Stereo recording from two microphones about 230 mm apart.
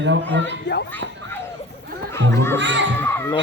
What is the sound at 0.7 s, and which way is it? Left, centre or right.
Speech, left.